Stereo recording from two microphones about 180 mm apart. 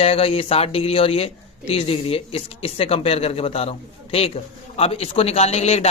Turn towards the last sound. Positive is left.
turn(degrees=35)  # may be behind; listen again after turning